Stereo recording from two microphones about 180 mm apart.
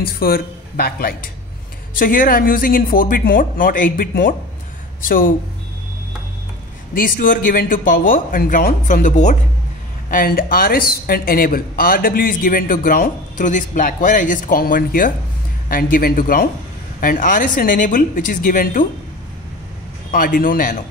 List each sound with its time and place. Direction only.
0.0 s speech: 55° left (ahead or behind)
6.9 s speech: 50° left (ahead or behind)
20.1 s speech: 50° left (ahead or behind)